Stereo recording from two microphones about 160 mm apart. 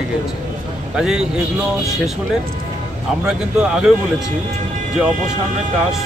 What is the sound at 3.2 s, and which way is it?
Speech, 5° right (ahead or behind).